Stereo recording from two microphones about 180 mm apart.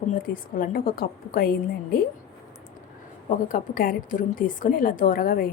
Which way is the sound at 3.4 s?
50° left (ahead or behind).